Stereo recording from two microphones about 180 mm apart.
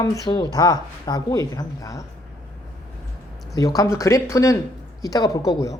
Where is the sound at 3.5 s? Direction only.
20° left (ahead or behind).